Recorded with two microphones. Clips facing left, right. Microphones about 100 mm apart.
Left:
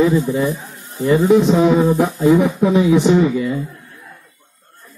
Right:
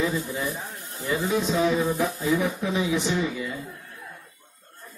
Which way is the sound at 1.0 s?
55° left (ahead or behind).